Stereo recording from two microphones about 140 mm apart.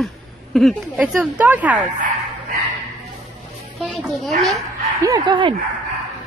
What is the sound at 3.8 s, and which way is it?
Speech, centre (ahead or behind).